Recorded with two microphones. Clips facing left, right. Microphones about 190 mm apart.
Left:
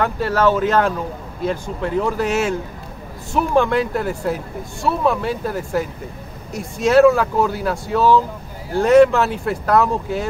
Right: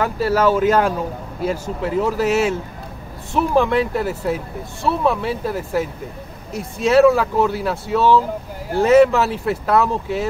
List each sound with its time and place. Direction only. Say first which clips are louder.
0.0 s speech: even; 10° right (ahead or behind)